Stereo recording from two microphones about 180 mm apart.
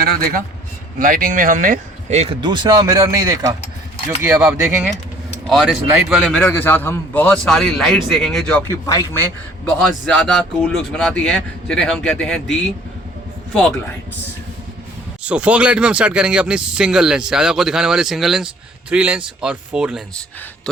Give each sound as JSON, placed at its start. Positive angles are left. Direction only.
{"t": 0.0, "sound": "a man's voice", "side_deg": -55}
{"t": 2.1, "sound": "speech", "side_deg": -30}
{"t": 5.5, "sound": "a man's voice", "side_deg": 0}
{"t": 13.5, "sound": "a man's voice", "side_deg": 0}
{"t": 15.2, "sound": "a man's voice", "side_deg": -5}